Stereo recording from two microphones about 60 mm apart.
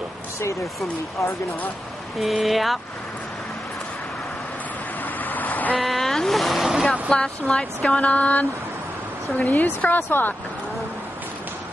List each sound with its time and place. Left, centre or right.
2.1 s speech: centre
5.2 s vehicle: left
5.8 s a sound: centre
6.9 s speech: centre; by 10.3 s left